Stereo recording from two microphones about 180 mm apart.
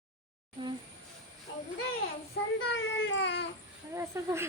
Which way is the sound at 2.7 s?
90° left.